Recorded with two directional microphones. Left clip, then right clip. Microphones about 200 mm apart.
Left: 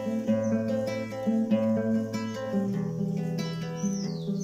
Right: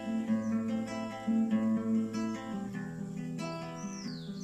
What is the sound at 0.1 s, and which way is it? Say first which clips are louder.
Music: left 6 dB; 65° left (ahead or behind).